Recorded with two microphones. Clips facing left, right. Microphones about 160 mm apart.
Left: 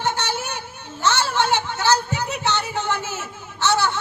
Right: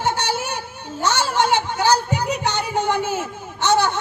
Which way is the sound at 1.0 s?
10° right (ahead or behind).